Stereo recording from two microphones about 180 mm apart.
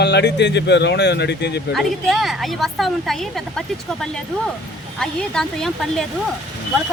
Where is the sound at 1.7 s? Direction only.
Centre (ahead or behind).